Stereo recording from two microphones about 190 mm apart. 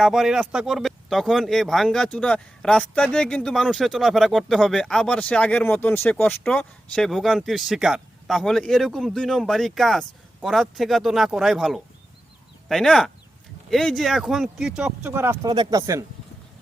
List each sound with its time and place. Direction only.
0.0 s speech: centre (ahead or behind); by 16.0 s 20° right (ahead or behind)